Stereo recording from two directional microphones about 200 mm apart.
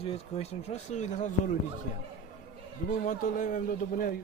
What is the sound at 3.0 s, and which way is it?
A man's voice, 40° left (ahead or behind).